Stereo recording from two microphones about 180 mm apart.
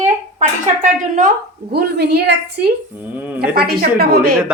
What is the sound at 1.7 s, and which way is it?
A woman's voice, 65° right (ahead or behind).